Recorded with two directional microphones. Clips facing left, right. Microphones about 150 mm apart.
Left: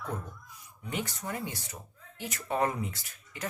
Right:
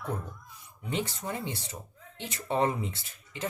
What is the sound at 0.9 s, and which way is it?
Speech, 25° right (ahead or behind).